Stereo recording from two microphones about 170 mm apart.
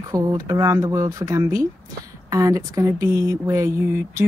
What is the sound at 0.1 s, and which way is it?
A woman's voice, 20° right (ahead or behind).